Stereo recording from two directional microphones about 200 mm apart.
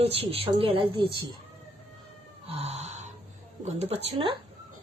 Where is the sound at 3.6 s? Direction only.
30° right (ahead or behind).